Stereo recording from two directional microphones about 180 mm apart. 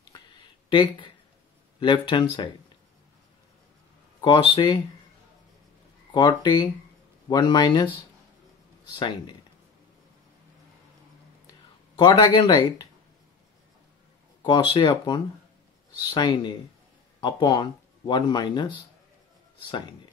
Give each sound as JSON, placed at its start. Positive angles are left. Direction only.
{"t": 0.7, "sound": "speech", "side_deg": 25}
{"t": 4.2, "sound": "speech", "side_deg": 25}
{"t": 6.1, "sound": "speech", "side_deg": 25}
{"t": 8.9, "sound": "speech", "side_deg": 25}
{"t": 12.0, "sound": "speech", "side_deg": 25}
{"t": 14.4, "sound": "speech", "side_deg": 25}